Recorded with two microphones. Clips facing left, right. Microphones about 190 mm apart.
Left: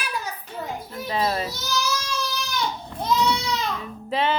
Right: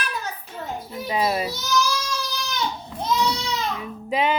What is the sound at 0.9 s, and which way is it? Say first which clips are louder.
Children playing: right 2 dB; 10° right (ahead or behind).